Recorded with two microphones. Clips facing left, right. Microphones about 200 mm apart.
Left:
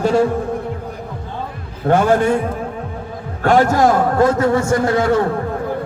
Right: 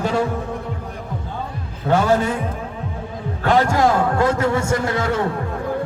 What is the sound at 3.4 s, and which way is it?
A man's voice, 45° left (ahead or behind).